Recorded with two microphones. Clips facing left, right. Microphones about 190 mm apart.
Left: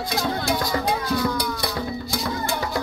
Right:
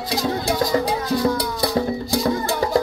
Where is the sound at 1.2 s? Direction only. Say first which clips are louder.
Right 4 dB; 30° right (ahead or behind).